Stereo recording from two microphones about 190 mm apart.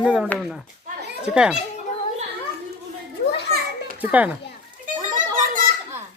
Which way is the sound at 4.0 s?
10° right (ahead or behind).